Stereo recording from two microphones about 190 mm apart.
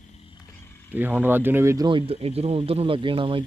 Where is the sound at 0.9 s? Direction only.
10° right (ahead or behind).